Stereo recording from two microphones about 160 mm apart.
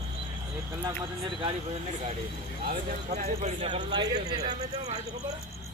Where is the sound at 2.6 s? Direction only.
40° right (ahead or behind); by 4.7 s 25° right (ahead or behind).